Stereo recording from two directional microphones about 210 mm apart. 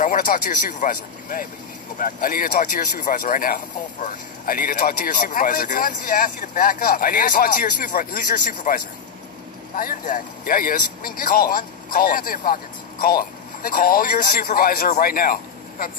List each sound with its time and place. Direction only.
0.0 s a man's voice: 40° left (ahead or behind)